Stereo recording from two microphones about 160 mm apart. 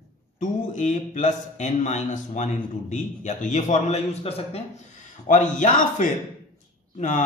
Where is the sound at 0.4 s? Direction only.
50° left (ahead or behind).